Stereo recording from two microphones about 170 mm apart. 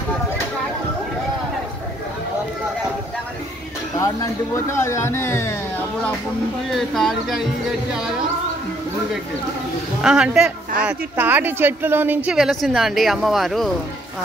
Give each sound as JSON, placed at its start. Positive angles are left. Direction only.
{"t": 4.7, "sound": "speech", "side_deg": 15}
{"t": 6.7, "sound": "a woman's voice", "side_deg": 0}
{"t": 10.0, "sound": "a woman's voice", "side_deg": -5}
{"t": 12.3, "sound": "a woman's voice", "side_deg": 0}